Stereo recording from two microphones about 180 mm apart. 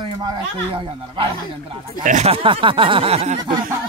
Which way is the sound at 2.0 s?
40° right (ahead or behind).